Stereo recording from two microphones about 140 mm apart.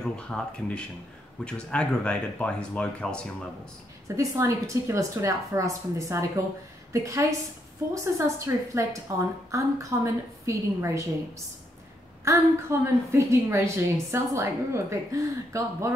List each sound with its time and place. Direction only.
0.0 s speech: 5° left (ahead or behind)
4.2 s a woman's voice: 20° right (ahead or behind)